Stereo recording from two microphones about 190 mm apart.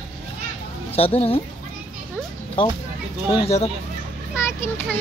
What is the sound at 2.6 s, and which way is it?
Speech, 25° left (ahead or behind).